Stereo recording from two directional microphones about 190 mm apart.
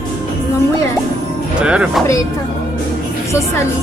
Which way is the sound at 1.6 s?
5° right (ahead or behind).